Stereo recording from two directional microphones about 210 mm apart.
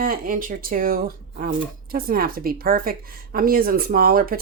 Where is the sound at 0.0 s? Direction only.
40° right (ahead or behind).